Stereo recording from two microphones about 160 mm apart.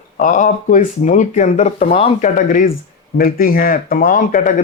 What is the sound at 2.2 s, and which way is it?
Speech, 50° left (ahead or behind).